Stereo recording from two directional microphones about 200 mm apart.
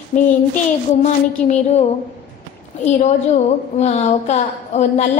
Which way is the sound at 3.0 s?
35° left (ahead or behind).